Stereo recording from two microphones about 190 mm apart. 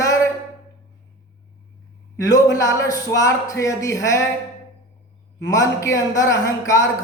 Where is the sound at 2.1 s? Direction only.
15° left (ahead or behind).